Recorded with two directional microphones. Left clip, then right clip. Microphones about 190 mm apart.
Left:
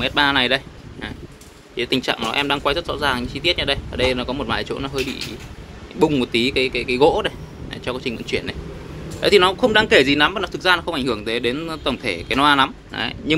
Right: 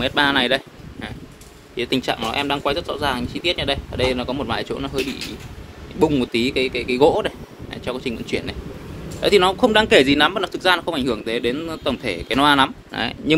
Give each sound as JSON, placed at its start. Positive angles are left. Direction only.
{"t": 0.0, "sound": "speech", "side_deg": -10}
{"t": 5.9, "sound": "speech", "side_deg": -5}
{"t": 9.6, "sound": "speech", "side_deg": -15}